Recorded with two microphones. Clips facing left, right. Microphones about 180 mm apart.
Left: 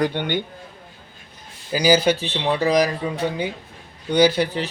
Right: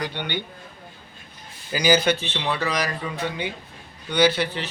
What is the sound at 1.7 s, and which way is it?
Speech, 35° left (ahead or behind).